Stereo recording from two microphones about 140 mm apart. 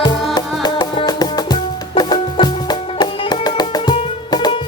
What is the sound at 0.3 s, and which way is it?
Music, 30° left (ahead or behind).